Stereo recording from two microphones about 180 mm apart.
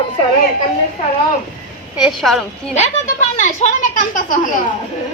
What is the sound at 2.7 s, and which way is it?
Speech, 40° left (ahead or behind).